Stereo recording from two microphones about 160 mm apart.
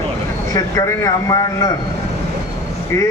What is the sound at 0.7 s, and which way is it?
Speech, 20° left (ahead or behind).